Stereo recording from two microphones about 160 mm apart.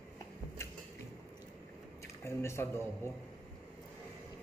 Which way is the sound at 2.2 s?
15° left (ahead or behind).